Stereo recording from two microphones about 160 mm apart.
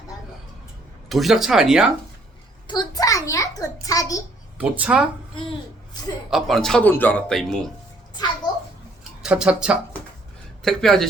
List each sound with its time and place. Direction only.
1.1 s speech: centre (ahead or behind)
2.6 s a child's voice: 25° left (ahead or behind)
4.5 s speech: 10° right (ahead or behind)
6.3 s speech: centre (ahead or behind)
9.2 s speech: 5° right (ahead or behind)